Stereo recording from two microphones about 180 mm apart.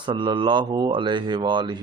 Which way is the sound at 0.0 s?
25° right (ahead or behind).